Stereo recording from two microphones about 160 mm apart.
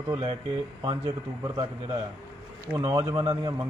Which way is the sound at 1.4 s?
30° right (ahead or behind).